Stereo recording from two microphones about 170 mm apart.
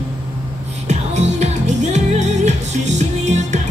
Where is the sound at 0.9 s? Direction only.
40° right (ahead or behind).